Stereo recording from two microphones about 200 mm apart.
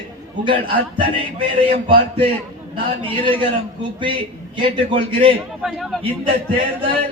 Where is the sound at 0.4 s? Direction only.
25° right (ahead or behind).